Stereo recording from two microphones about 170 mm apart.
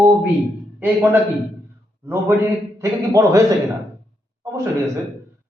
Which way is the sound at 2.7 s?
15° right (ahead or behind).